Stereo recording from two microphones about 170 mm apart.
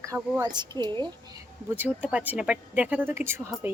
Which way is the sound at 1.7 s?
10° right (ahead or behind).